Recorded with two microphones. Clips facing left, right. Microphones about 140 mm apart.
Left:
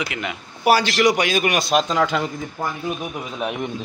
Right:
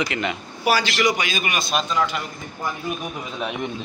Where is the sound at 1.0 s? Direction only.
70° left (ahead or behind); by 2.2 s 90° left.